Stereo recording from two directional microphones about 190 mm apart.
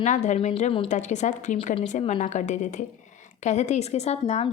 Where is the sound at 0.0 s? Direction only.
40° left (ahead or behind).